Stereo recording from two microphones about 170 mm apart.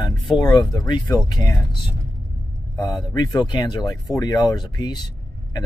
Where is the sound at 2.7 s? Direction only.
25° left (ahead or behind).